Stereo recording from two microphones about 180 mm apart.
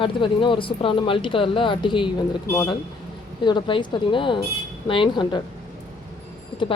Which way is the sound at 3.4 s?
25° left (ahead or behind).